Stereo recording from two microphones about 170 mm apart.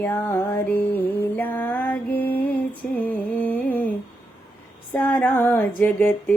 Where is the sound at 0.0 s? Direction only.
15° left (ahead or behind).